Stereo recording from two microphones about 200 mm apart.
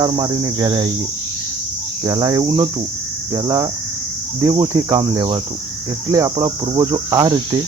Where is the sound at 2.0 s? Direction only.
20° right (ahead or behind).